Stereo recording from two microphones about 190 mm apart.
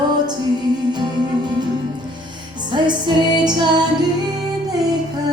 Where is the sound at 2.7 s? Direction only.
25° right (ahead or behind).